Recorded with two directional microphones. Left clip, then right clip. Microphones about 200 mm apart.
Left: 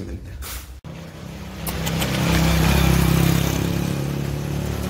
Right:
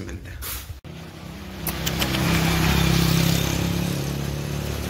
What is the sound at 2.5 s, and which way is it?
Vehicle, 60° left (ahead or behind).